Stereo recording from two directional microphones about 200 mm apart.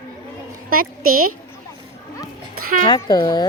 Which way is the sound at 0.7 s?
45° right (ahead or behind).